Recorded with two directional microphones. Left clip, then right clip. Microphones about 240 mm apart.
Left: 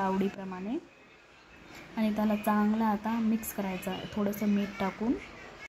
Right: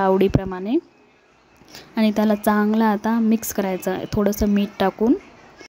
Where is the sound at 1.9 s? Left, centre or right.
Right.